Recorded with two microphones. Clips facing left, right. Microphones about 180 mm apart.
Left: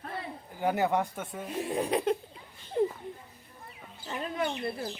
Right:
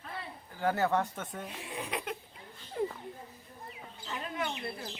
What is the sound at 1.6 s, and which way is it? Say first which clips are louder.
Speech: left 12 dB; 40° left (ahead or behind).